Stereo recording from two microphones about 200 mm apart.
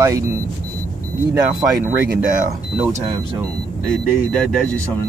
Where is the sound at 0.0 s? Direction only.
15° right (ahead or behind).